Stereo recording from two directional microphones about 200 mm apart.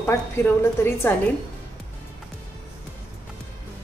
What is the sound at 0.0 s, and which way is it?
A woman's voice, 10° left (ahead or behind).